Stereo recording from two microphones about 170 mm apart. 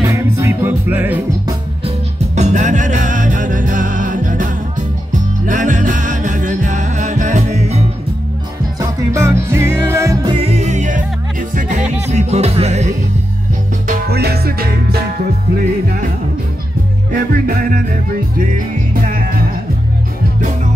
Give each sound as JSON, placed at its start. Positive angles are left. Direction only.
{"t": 0.1, "sound": "music", "side_deg": -15}
{"t": 1.9, "sound": "music", "side_deg": -40}
{"t": 8.7, "sound": "music", "side_deg": -15}
{"t": 10.3, "sound": "music", "side_deg": -35}
{"t": 12.1, "sound": "music", "side_deg": -40}
{"t": 13.8, "sound": "music", "side_deg": -65}
{"t": 17.1, "sound": "music", "side_deg": -55}
{"t": 18.9, "sound": "music", "side_deg": -60}